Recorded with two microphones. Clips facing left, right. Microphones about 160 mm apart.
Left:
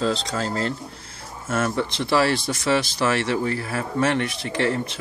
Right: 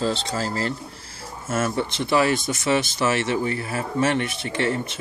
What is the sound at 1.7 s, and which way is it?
Speech, centre (ahead or behind).